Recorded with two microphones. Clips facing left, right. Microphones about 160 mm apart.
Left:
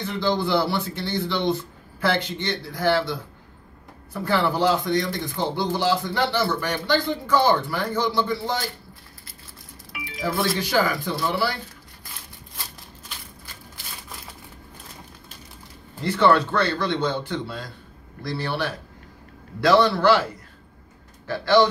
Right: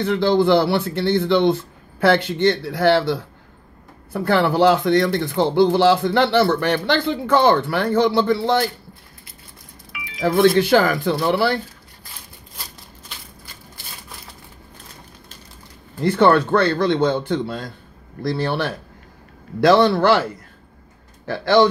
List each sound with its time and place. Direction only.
0.0 s speech: 60° right (ahead or behind)
10.2 s speech: 65° right (ahead or behind)
16.0 s speech: 50° right (ahead or behind)
21.3 s speech: 50° right (ahead or behind)